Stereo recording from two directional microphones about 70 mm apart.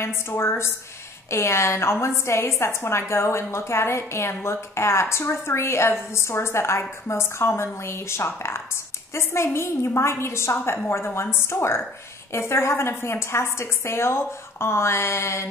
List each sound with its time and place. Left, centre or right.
0.0 s a woman's voice: left